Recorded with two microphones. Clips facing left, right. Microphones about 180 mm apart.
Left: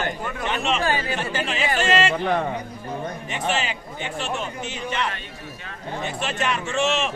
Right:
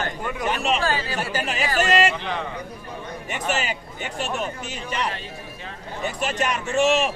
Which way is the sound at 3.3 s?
45° right (ahead or behind).